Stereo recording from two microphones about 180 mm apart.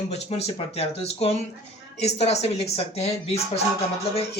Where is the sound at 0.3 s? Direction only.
35° left (ahead or behind).